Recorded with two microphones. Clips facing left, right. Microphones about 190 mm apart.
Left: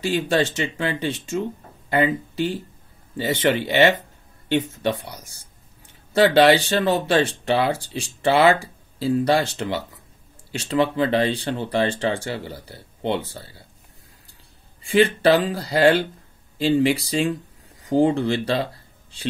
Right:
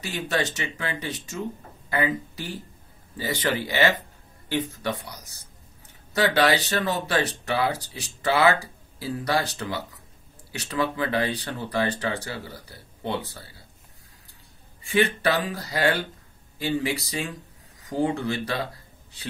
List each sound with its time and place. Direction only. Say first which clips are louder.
0.0 s speech: left 7 dB; 30° left (ahead or behind)
15.2 s speech: left 7 dB; 30° left (ahead or behind)